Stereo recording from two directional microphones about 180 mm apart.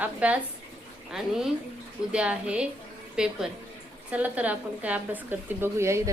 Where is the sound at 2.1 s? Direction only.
5° right (ahead or behind).